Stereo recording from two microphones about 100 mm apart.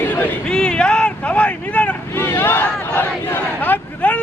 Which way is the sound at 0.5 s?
10° left (ahead or behind).